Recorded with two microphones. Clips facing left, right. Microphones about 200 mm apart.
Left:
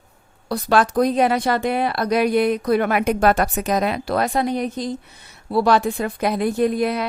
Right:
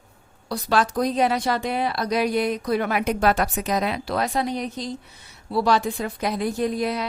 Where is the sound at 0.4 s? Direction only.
55° left (ahead or behind).